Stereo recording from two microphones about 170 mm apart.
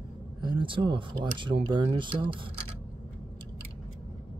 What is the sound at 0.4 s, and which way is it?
Speech, 30° right (ahead or behind).